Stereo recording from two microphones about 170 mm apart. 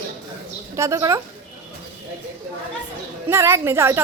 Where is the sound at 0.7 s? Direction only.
15° right (ahead or behind).